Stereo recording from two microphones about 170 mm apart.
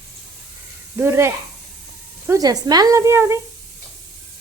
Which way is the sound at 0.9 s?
15° right (ahead or behind).